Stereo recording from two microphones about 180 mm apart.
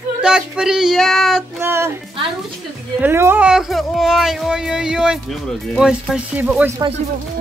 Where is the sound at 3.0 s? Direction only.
10° right (ahead or behind).